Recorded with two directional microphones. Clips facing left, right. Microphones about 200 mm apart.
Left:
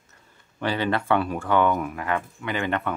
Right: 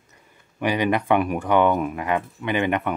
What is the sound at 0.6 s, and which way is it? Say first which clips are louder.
Speech: right 3 dB; 15° right (ahead or behind).